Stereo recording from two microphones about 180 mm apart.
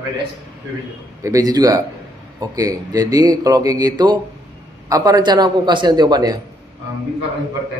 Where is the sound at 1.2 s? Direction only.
20° right (ahead or behind).